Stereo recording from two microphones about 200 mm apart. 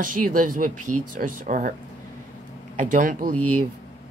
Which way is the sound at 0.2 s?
45° right (ahead or behind).